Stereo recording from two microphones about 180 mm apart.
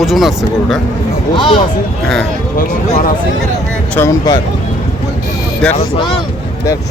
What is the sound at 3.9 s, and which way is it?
Speech, 15° left (ahead or behind).